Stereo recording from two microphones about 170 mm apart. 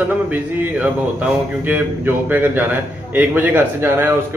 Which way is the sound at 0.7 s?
10° right (ahead or behind).